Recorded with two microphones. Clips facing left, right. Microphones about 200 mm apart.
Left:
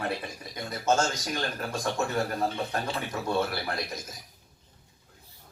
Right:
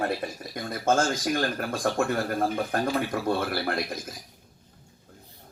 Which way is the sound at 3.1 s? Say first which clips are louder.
Right 2 dB; 55° right (ahead or behind).